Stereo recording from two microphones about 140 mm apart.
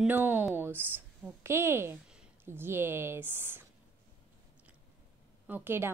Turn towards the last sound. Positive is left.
turn(degrees=-15)  # may be behind; listen again after turning